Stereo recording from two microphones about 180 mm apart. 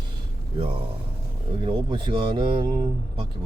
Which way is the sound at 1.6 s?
25° right (ahead or behind).